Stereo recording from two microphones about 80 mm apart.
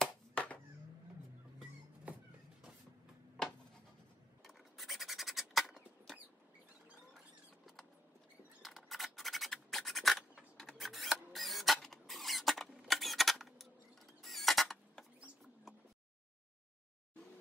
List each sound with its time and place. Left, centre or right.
0.0 s a sound: centre
2.1 s vehicle: centre
4.5 s scratch: centre
7.2 s vehicle: centre
8.6 s scratch: centre
10.6 s a sound: centre